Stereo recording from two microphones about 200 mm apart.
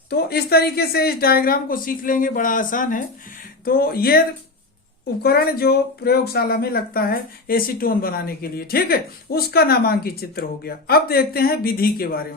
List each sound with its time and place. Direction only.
0.1 s speech: 50° left (ahead or behind)
5.2 s speech: 50° left (ahead or behind)